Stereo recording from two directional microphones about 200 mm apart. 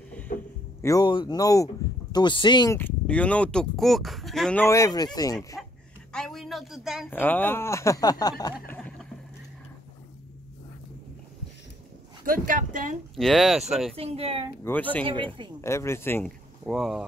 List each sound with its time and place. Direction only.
0.3 s a sound: 45° left (ahead or behind)
0.8 s speech: 20° left (ahead or behind)
6.1 s speech: centre (ahead or behind)
7.1 s speech: 10° left (ahead or behind)
8.6 s boat: 10° left (ahead or behind)
12.3 s speech: 40° right (ahead or behind)
13.1 s speech: centre (ahead or behind)
13.9 s speech: 30° right (ahead or behind)
14.6 s speech: 10° left (ahead or behind)
16.6 s speech: centre (ahead or behind)